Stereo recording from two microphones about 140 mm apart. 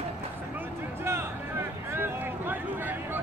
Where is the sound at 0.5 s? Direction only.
20° right (ahead or behind).